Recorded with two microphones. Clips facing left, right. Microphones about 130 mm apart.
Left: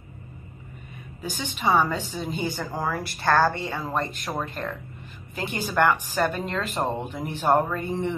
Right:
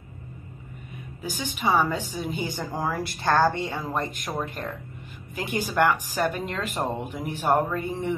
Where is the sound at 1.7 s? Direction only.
10° right (ahead or behind).